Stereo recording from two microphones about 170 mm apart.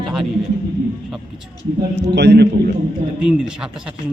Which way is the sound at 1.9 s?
90° right.